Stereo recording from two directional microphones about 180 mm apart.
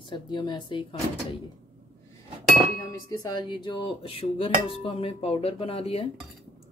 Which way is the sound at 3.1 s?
20° left (ahead or behind).